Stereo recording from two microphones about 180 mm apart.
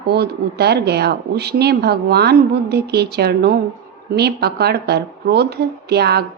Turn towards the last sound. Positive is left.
turn(degrees=-65)  # may be behind; listen again after turning